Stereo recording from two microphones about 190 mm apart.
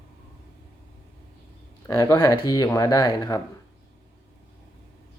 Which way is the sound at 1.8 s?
20° left (ahead or behind).